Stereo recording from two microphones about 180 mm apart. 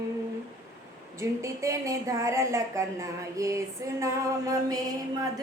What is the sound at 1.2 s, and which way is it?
A woman's voice, 15° right (ahead or behind).